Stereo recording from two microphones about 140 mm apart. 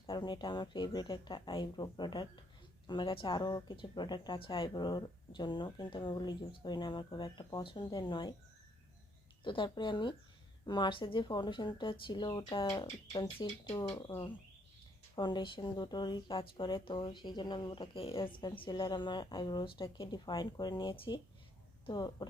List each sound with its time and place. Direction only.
0.1 s speech: 30° left (ahead or behind)
9.4 s speech: 35° left (ahead or behind)